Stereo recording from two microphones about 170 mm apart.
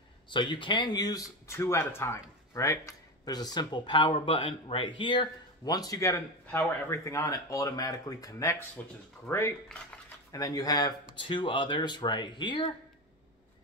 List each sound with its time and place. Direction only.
0.3 s speech: 25° left (ahead or behind)